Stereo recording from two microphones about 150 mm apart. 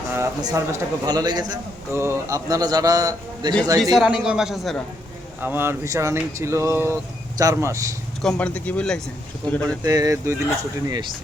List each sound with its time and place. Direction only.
0.4 s speech: 25° right (ahead or behind)
3.9 s a man's voice: 5° right (ahead or behind)
5.4 s speech: 15° right (ahead or behind)
8.2 s speech: 5° left (ahead or behind)
9.8 s speech: 25° right (ahead or behind)